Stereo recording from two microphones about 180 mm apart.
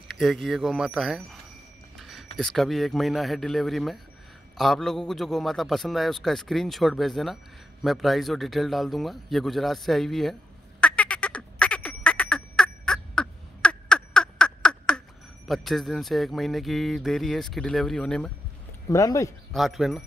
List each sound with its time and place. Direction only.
0.1 s a man's voice: centre (ahead or behind)
2.0 s a sound: centre (ahead or behind)
2.3 s a man's voice: centre (ahead or behind)
10.8 s frog: 5° left (ahead or behind)
18.9 s speech: 20° left (ahead or behind)
19.5 s a man's voice: centre (ahead or behind)